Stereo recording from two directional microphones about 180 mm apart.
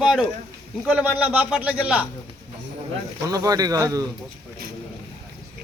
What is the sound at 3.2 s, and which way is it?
Speech, 20° right (ahead or behind).